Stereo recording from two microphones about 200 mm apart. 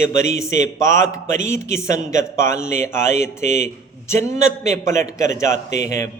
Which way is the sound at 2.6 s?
35° right (ahead or behind).